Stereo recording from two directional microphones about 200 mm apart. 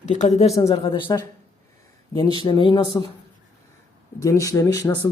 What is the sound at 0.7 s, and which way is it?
Speech, 25° left (ahead or behind).